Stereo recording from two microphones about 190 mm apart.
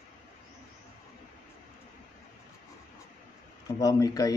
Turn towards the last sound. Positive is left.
turn(degrees=20)  # may be behind; listen again after turning